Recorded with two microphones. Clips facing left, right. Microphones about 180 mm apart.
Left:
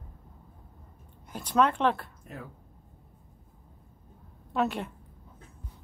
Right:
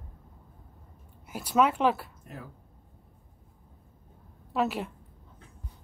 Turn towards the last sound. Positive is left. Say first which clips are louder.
# even
turn(degrees=0)  # may be behind; listen again after turning